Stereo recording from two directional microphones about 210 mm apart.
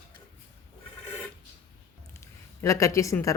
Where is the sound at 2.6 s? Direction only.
15° left (ahead or behind).